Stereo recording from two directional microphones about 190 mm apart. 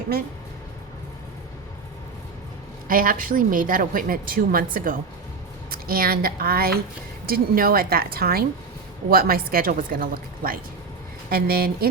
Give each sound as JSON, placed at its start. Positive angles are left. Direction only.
{"t": 2.8, "sound": "a woman's voice", "side_deg": -50}